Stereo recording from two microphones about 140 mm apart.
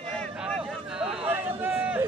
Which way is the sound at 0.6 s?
5° right (ahead or behind).